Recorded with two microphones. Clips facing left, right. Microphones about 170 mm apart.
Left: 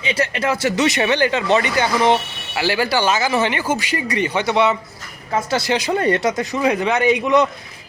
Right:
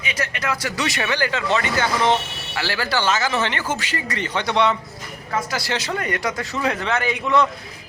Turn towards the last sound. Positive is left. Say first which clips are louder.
# left 5 dB
turn(degrees=20)  # may be behind; listen again after turning